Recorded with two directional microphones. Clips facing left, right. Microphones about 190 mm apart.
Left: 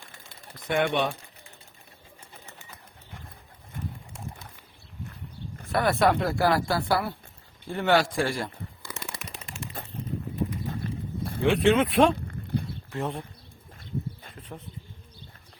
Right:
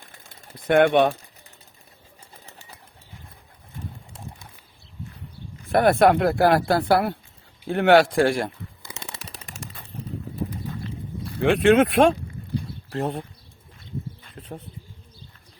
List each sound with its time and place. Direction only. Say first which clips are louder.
0.7 s speech: right 8 dB; 60° right (ahead or behind)
5.6 s speech: right 6 dB; 50° right (ahead or behind)
8.8 s shuffling cards: left 1 dB; 25° right (ahead or behind)
11.3 s speech: right 5 dB; 60° right (ahead or behind)
13.0 s speech: right 4 dB; 35° right (ahead or behind)